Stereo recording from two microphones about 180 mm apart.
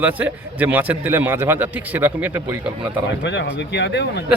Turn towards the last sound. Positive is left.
turn(degrees=70)  # may be behind; listen again after turning